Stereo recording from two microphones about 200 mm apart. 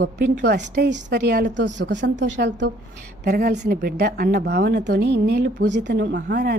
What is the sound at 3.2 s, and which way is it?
Speech, 50° right (ahead or behind).